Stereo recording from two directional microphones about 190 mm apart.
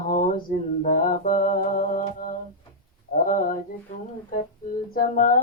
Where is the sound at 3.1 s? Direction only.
45° left (ahead or behind).